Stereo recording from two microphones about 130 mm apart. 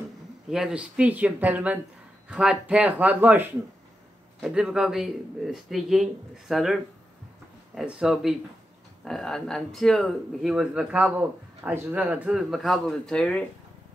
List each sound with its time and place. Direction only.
0.5 s speech: 5° right (ahead or behind)